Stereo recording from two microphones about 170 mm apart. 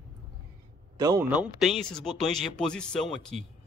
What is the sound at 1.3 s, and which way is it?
Speech, centre (ahead or behind).